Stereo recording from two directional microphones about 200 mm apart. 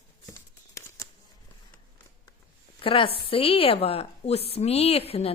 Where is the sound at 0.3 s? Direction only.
15° left (ahead or behind).